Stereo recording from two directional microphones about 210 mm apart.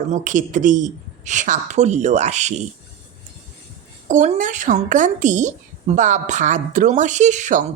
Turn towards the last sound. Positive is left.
turn(degrees=-35)  # may be behind; listen again after turning